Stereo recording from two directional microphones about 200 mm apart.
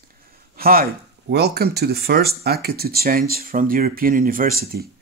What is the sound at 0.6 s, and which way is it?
Speech, 50° right (ahead or behind).